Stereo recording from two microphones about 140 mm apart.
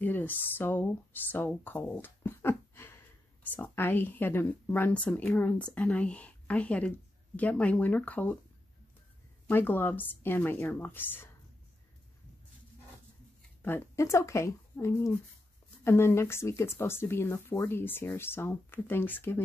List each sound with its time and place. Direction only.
0.0 s a woman's voice: 15° left (ahead or behind)
9.5 s a woman's voice: 15° left (ahead or behind)
13.6 s a woman's voice: 15° left (ahead or behind)